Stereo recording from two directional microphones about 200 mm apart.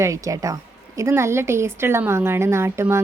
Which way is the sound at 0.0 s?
15° right (ahead or behind).